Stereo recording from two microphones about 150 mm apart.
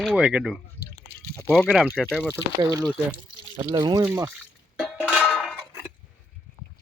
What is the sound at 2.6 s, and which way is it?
Speech, 25° right (ahead or behind).